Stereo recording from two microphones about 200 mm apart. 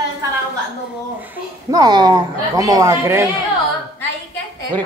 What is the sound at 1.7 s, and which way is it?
Speech, 20° right (ahead or behind).